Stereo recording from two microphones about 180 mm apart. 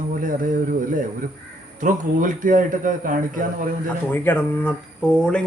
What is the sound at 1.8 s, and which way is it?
A man's voice, 45° right (ahead or behind).